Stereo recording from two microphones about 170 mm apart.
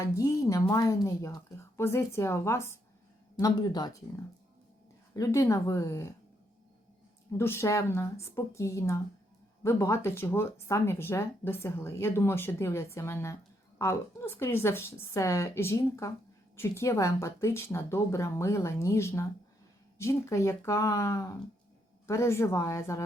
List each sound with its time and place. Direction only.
0.0 s speech: 20° left (ahead or behind)
5.1 s speech: 20° left (ahead or behind)
7.3 s speech: 15° left (ahead or behind)